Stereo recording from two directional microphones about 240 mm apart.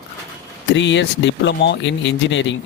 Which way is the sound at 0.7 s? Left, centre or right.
Left.